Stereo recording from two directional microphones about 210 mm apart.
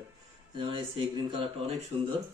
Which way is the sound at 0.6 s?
25° right (ahead or behind).